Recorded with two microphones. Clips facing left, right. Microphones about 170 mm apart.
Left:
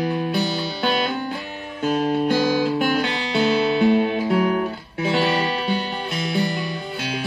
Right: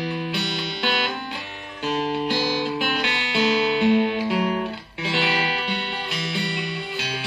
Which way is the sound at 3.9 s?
40° left (ahead or behind).